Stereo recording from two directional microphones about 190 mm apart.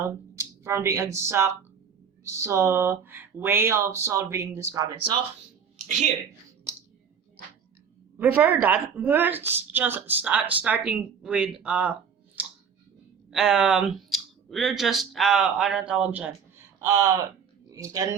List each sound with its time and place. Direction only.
0.0 s a woman's voice: 15° right (ahead or behind)
5.7 s a sound: 40° right (ahead or behind)
8.2 s a woman's voice: 10° right (ahead or behind)
13.3 s speech: 5° right (ahead or behind)